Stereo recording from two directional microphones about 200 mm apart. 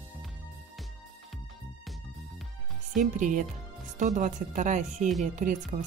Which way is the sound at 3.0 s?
40° right (ahead or behind).